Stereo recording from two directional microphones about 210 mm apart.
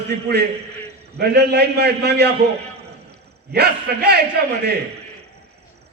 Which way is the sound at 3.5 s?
50° right (ahead or behind).